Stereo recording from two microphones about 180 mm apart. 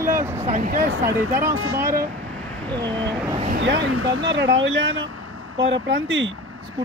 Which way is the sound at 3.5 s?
75° right (ahead or behind).